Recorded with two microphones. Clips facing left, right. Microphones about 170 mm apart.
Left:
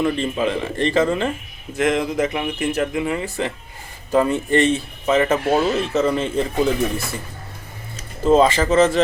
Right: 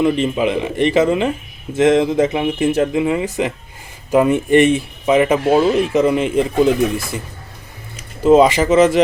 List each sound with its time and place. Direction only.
0.0 s speech: 15° right (ahead or behind)
8.2 s speech: 10° right (ahead or behind)